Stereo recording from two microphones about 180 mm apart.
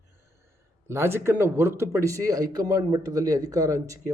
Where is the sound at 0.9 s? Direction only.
15° right (ahead or behind).